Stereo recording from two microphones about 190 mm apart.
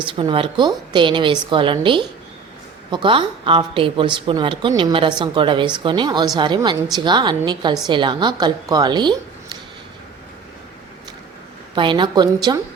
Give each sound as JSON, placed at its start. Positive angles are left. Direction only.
{"t": 0.1, "sound": "a woman's voice", "side_deg": -25}
{"t": 11.7, "sound": "a woman's voice", "side_deg": -25}